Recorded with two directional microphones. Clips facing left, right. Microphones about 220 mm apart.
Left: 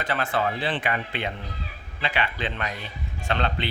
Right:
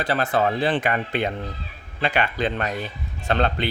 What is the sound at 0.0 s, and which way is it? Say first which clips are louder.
Speech: right 4 dB; 35° right (ahead or behind).